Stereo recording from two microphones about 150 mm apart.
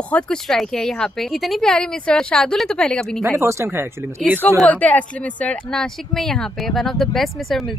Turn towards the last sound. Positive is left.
turn(degrees=0)  # may be behind; listen again after turning